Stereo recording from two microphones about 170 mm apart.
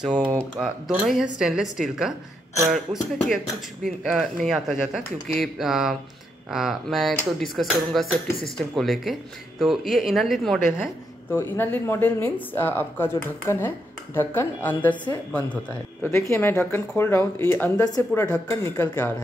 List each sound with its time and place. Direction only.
0.0 s speech: 5° right (ahead or behind)
3.8 s speech: centre (ahead or behind)
11.2 s speech: 10° left (ahead or behind)